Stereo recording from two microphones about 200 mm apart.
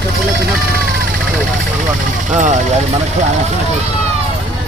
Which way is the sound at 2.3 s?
40° right (ahead or behind).